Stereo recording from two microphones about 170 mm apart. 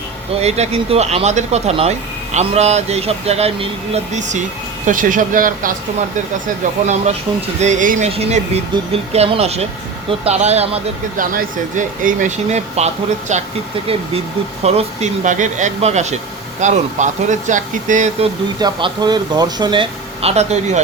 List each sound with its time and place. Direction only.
0.3 s speech: 40° right (ahead or behind)
7.6 s speech: 45° right (ahead or behind)
11.2 s speech: 50° right (ahead or behind)
14.6 s speech: 40° right (ahead or behind)
18.6 s speech: 25° right (ahead or behind); by 20.8 s 40° right (ahead or behind)